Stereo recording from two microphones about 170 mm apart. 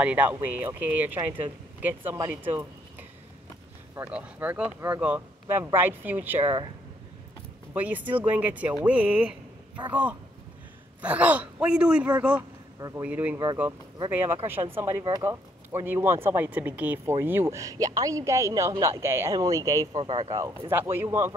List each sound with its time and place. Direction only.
0.0 s speech: 10° right (ahead or behind)
7.7 s speech: 10° right (ahead or behind)
11.0 s speech: 10° right (ahead or behind)